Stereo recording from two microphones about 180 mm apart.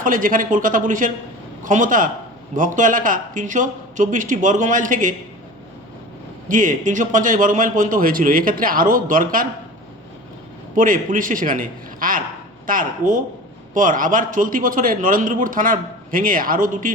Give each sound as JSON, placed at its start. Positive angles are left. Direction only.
{"t": 0.0, "sound": "a man's voice", "side_deg": -50}
{"t": 6.5, "sound": "a man's voice", "side_deg": -45}
{"t": 10.8, "sound": "a man's voice", "side_deg": -50}